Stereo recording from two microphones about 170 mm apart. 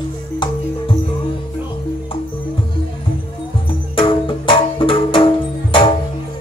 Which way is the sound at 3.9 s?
30° left (ahead or behind).